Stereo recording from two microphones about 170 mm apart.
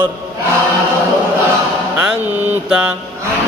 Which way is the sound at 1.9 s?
5° right (ahead or behind).